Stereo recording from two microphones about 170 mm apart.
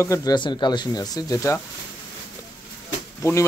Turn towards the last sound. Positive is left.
turn(degrees=15)  # may be behind; listen again after turning